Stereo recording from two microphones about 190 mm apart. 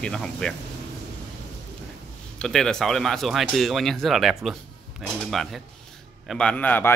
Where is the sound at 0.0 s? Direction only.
5° left (ahead or behind).